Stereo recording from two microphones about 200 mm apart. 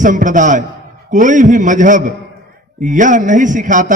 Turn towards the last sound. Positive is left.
turn(degrees=-40)  # may be behind; listen again after turning